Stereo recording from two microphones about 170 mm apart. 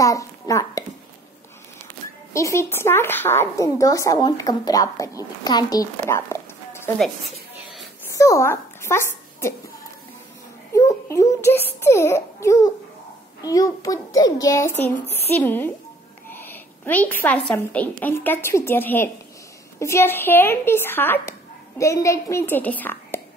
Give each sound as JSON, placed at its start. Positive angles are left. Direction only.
{"t": 0.0, "sound": "hands", "side_deg": 20}
{"t": 2.3, "sound": "speech", "side_deg": 15}
{"t": 8.1, "sound": "speech", "side_deg": 20}
{"t": 10.7, "sound": "baby cry", "side_deg": 20}
{"t": 11.4, "sound": "a child's voice", "side_deg": 15}